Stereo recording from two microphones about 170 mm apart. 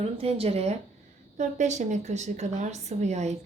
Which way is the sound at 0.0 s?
35° right (ahead or behind).